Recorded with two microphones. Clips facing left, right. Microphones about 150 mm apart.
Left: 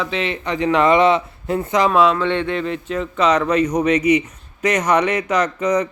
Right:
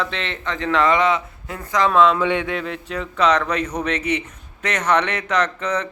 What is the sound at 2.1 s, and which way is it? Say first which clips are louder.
A man's voice: left 1 dB; 10° right (ahead or behind).